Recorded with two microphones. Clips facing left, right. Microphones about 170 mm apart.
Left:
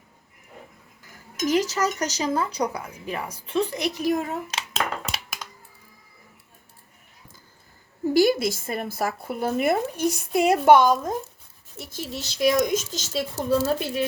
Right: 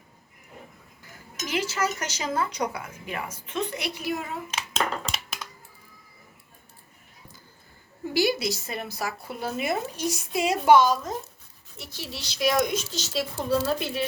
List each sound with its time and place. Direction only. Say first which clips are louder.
1.4 s speech: left 5 dB; 40° left (ahead or behind)
8.1 s speech: left 5 dB; 50° left (ahead or behind)